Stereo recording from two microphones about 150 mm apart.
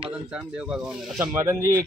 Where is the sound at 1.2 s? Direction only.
20° right (ahead or behind).